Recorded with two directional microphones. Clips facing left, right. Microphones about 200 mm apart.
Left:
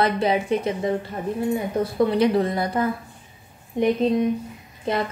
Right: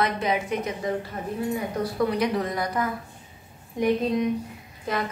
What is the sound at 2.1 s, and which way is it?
Speech, 30° left (ahead or behind).